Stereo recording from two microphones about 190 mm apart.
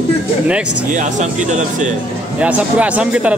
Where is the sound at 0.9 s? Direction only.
40° right (ahead or behind).